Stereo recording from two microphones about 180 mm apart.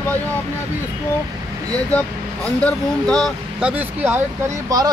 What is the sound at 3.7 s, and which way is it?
Speech, 10° right (ahead or behind).